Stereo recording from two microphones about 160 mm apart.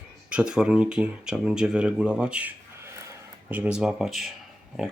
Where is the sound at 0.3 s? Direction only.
5° right (ahead or behind).